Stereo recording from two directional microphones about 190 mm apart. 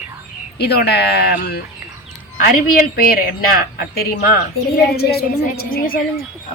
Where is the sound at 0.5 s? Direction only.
60° left (ahead or behind).